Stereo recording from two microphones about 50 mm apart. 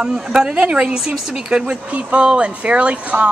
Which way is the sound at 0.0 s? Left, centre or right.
Centre.